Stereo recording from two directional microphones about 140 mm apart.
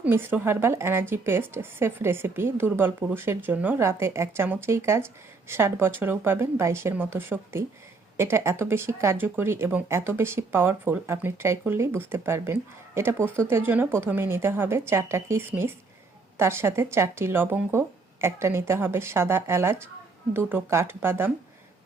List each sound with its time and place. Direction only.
0.0 s speech: 15° right (ahead or behind)